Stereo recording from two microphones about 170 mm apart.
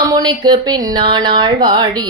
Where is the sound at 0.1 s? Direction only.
25° right (ahead or behind).